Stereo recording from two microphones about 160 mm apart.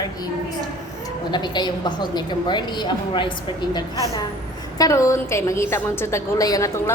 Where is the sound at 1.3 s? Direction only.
30° left (ahead or behind).